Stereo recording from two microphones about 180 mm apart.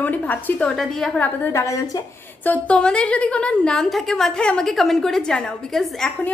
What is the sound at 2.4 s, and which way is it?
A woman's voice, 10° left (ahead or behind).